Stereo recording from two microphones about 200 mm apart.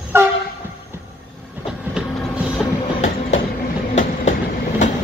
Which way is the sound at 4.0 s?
35° left (ahead or behind).